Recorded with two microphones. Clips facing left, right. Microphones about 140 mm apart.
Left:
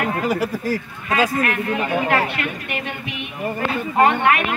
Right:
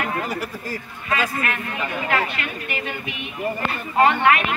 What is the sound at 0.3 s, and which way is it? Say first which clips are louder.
Speech: left 7 dB; 80° left.